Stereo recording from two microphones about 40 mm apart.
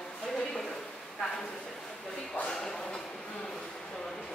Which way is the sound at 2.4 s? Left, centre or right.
Left.